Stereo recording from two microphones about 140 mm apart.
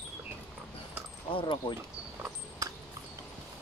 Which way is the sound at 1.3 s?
40° left (ahead or behind).